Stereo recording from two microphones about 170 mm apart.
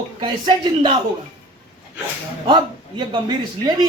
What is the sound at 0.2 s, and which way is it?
Speech, 25° right (ahead or behind).